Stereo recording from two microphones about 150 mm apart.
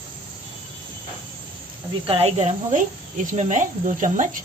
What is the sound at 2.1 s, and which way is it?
Speech, 45° right (ahead or behind).